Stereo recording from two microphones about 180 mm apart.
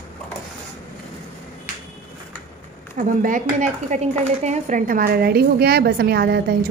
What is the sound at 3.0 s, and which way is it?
A woman's voice, 50° right (ahead or behind).